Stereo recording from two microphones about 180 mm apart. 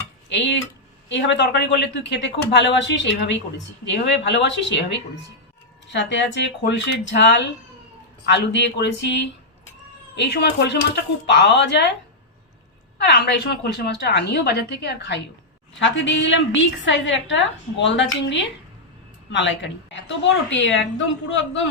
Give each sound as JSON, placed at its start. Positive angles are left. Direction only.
{"t": 0.3, "sound": "speech", "side_deg": 90}
{"t": 4.0, "sound": "a woman's voice", "side_deg": 75}
{"t": 13.0, "sound": "a woman's voice", "side_deg": 70}
{"t": 15.7, "sound": "a woman's voice", "side_deg": 90}